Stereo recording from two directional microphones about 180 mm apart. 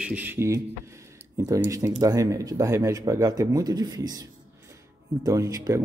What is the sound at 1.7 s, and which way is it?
Speech, 20° right (ahead or behind).